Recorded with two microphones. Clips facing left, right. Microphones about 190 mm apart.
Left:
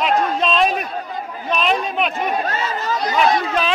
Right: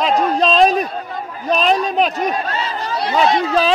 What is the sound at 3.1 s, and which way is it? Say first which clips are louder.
Speech: right 3 dB; 30° right (ahead or behind).